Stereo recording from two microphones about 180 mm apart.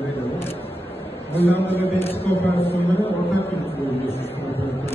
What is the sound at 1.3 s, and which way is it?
Speech, 10° left (ahead or behind).